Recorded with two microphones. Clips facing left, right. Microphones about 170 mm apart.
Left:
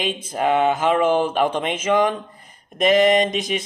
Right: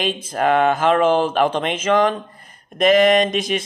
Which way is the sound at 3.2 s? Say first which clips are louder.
Right 2 dB; 15° left (ahead or behind).